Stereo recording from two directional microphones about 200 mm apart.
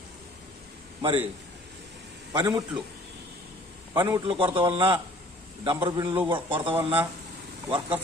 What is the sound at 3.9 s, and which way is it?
A man's voice, 15° right (ahead or behind).